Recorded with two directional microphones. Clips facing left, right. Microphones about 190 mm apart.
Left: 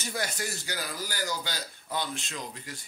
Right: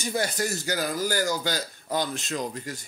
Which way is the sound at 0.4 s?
45° right (ahead or behind).